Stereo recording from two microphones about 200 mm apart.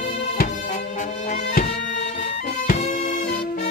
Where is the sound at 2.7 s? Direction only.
35° left (ahead or behind).